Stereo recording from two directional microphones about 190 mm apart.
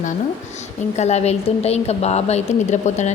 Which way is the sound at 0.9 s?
35° left (ahead or behind).